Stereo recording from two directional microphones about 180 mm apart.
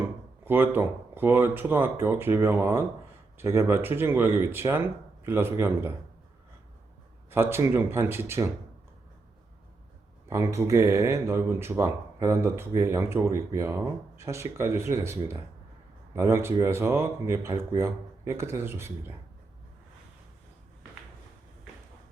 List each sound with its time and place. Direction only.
0.4 s speech: 10° right (ahead or behind)
7.3 s speech: 15° right (ahead or behind)
10.2 s speech: 15° right (ahead or behind)